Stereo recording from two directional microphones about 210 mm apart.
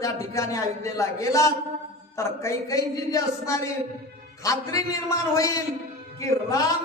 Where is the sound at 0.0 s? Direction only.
15° left (ahead or behind).